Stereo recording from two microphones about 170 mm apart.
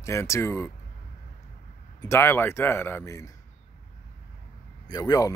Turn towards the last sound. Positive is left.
turn(degrees=20)  # may be behind; listen again after turning